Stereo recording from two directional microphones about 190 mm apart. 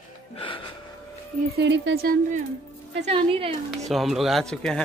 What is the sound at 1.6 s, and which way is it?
Speech, 65° right (ahead or behind).